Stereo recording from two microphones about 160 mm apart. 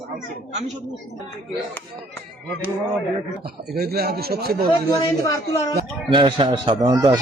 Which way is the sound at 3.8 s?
75° right (ahead or behind).